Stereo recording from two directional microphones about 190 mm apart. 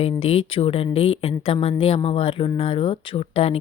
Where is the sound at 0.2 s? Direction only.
30° left (ahead or behind).